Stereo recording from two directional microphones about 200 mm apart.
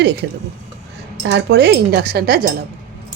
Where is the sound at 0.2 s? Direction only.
60° right (ahead or behind).